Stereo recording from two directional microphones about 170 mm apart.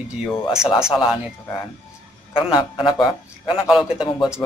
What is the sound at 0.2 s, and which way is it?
Speech, 5° right (ahead or behind).